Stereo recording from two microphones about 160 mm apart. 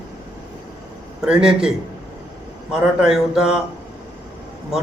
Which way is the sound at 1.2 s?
5° right (ahead or behind).